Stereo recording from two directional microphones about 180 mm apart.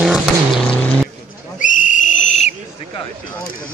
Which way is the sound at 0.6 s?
5° left (ahead or behind).